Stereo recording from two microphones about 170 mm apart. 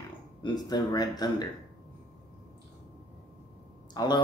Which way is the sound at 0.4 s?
25° left (ahead or behind).